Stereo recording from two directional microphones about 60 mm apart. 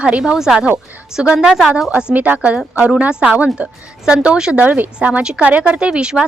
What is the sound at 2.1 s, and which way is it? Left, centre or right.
Speech, right.